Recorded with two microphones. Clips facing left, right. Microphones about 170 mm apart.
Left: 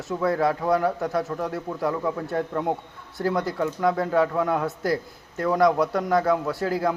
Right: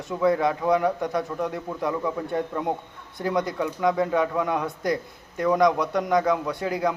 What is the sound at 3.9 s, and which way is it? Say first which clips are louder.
Speech: even; 20° right (ahead or behind).